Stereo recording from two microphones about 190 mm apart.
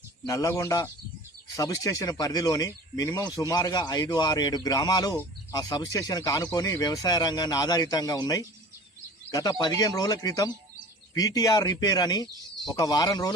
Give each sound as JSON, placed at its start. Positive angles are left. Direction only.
{"t": 0.3, "sound": "a man's voice", "side_deg": 15}